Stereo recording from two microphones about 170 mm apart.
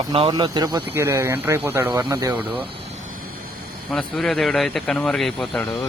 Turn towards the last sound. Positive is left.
turn(degrees=5)  # may be behind; listen again after turning